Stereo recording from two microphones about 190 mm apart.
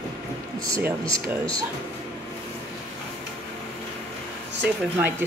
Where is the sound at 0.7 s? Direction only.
15° right (ahead or behind).